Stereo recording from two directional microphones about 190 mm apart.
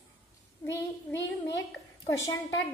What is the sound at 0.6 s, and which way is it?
Child singing, 70° left (ahead or behind).